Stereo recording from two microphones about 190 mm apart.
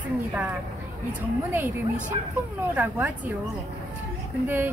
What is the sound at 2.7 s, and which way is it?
Speech, 10° right (ahead or behind).